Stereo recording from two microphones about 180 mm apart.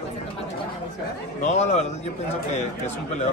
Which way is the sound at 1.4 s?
40° left (ahead or behind).